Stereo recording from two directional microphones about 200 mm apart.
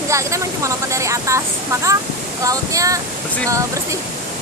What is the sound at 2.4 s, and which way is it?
Speech, 15° right (ahead or behind).